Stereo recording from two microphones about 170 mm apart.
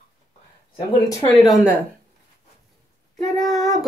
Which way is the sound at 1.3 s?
Centre (ahead or behind).